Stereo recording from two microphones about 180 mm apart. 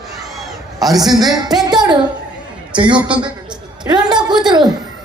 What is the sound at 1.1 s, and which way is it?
A man's voice, 25° right (ahead or behind).